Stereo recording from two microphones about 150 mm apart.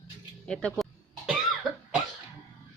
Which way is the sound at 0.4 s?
5° left (ahead or behind).